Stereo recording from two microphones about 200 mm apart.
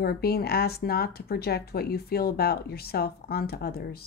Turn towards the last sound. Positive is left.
turn(degrees=50)  # may be behind; listen again after turning